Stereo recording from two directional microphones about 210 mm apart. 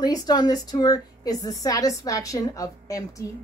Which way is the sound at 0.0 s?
20° left (ahead or behind).